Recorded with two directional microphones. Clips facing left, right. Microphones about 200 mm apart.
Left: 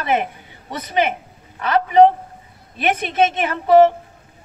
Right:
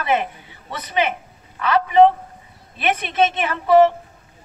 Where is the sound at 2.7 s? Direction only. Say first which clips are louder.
Left 2 dB; 50° left (ahead or behind).